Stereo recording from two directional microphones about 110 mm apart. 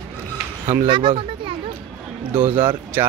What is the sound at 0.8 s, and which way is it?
Speech, 50° right (ahead or behind).